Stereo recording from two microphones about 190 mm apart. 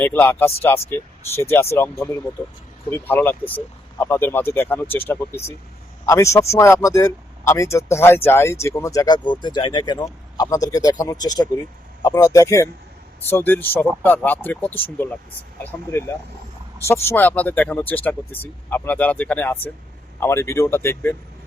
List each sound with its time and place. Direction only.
0.0 s speech: 10° left (ahead or behind)